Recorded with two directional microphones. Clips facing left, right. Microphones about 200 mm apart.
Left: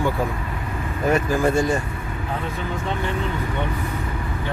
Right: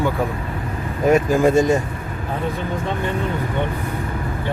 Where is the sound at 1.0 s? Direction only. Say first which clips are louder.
Right 5 dB; 15° right (ahead or behind).